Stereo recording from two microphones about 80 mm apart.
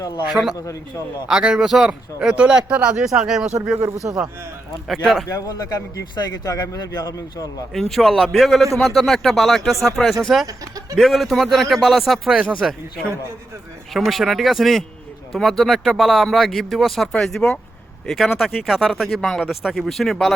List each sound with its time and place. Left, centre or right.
0.3 s speech: centre
0.5 s speech: left
1.3 s speech: centre
4.9 s speech: centre
5.3 s speech: left
7.7 s speech: centre
12.4 s speech: centre
13.9 s speech: centre